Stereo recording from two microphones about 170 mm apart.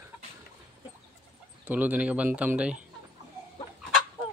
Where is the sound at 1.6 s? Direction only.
10° right (ahead or behind).